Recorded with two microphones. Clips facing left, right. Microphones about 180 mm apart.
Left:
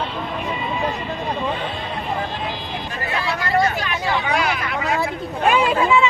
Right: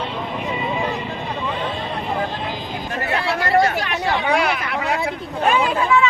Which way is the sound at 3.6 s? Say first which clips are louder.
Right 2 dB; 60° right (ahead or behind).